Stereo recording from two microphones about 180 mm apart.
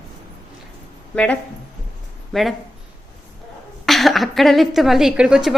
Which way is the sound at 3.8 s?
Centre (ahead or behind).